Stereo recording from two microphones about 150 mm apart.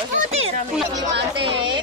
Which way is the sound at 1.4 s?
30° right (ahead or behind).